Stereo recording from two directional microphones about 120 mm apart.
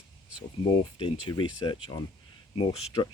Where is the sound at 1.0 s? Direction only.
40° left (ahead or behind).